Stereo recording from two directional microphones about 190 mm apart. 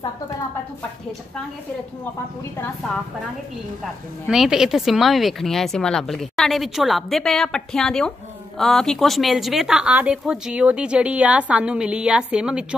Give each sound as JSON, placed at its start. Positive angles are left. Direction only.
{"t": 4.3, "sound": "speech", "side_deg": -5}